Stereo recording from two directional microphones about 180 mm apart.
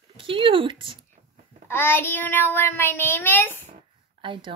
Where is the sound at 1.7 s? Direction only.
10° left (ahead or behind).